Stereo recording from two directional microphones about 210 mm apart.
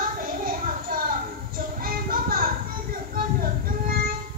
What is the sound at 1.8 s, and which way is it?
Music, 45° right (ahead or behind).